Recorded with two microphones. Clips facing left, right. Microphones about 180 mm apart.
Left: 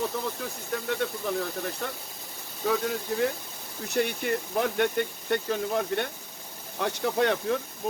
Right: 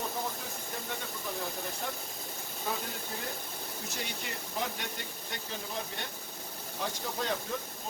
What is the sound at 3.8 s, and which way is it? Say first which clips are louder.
Speech: left 16 dB; 60° left (ahead or behind).